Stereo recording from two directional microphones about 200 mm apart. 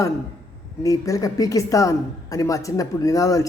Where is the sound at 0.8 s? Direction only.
15° left (ahead or behind).